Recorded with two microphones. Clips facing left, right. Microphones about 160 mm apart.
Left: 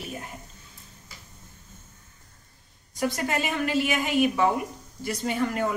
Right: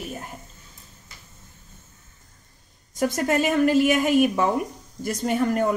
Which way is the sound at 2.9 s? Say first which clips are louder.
Right 5 dB; 45° right (ahead or behind).